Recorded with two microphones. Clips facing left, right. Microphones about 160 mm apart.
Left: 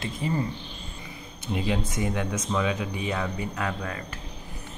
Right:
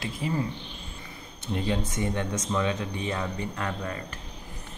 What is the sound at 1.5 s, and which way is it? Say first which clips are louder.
Speech: left 1 dB; 10° left (ahead or behind).